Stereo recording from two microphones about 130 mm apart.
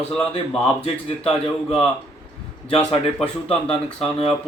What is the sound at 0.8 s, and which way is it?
Speech, 45° left (ahead or behind).